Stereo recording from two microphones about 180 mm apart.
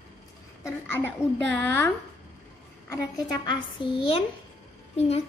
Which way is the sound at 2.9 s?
20° left (ahead or behind).